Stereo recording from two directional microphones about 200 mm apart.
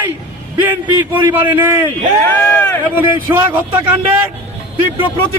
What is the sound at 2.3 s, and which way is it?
Speech, 10° left (ahead or behind).